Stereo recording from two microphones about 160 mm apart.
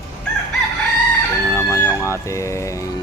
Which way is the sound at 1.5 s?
20° left (ahead or behind).